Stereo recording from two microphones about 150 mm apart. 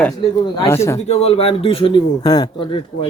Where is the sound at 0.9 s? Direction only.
45° left (ahead or behind).